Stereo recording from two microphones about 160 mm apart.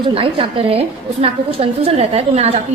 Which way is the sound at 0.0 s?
35° right (ahead or behind).